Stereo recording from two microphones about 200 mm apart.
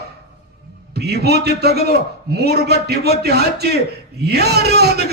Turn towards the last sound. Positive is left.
turn(degrees=-55)  # may be behind; listen again after turning